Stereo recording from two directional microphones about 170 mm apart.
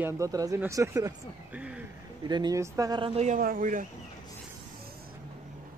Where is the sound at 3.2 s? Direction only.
55° right (ahead or behind).